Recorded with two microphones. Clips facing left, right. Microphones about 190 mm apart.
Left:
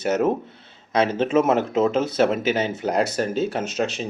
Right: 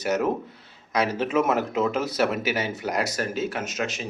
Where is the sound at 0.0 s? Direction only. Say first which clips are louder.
Left 3 dB; 25° left (ahead or behind).